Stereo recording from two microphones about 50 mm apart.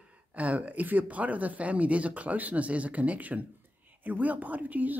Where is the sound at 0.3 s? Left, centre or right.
Right.